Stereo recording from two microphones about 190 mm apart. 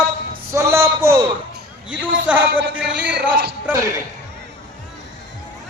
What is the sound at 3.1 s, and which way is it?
Speech, 60° right (ahead or behind).